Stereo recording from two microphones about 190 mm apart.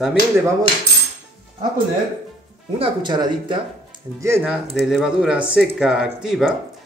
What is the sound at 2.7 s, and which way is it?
Speech, 25° right (ahead or behind).